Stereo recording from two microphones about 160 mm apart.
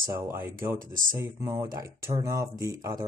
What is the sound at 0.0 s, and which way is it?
Speech, 20° right (ahead or behind).